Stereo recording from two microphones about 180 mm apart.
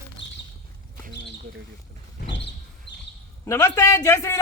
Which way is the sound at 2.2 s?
75° left (ahead or behind).